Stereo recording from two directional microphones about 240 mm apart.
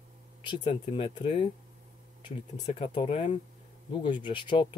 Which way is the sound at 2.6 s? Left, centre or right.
Left.